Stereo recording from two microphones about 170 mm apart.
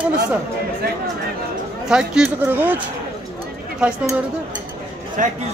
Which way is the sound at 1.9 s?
5° right (ahead or behind).